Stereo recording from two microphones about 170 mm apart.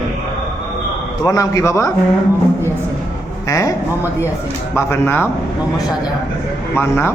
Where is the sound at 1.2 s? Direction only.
20° left (ahead or behind).